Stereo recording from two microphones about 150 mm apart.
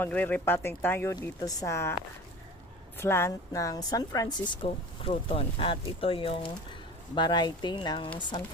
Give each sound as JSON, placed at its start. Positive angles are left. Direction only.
{"t": 0.0, "sound": "speech", "side_deg": 10}
{"t": 3.0, "sound": "speech", "side_deg": 15}